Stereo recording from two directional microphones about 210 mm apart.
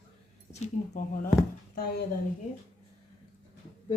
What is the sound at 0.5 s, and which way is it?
Speech, 35° left (ahead or behind).